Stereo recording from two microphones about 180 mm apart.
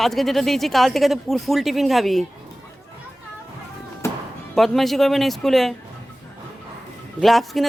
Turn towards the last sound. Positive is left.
turn(degrees=0)  # may be behind; listen again after turning